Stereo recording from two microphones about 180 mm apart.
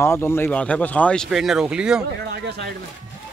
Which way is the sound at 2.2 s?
70° right (ahead or behind).